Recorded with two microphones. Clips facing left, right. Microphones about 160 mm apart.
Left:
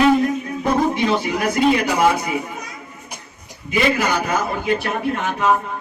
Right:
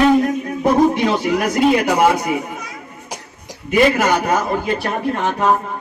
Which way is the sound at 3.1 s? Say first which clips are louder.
Right 8 dB; 90° right.